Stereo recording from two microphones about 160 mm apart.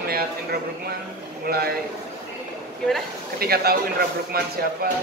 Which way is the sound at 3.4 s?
75° right (ahead or behind).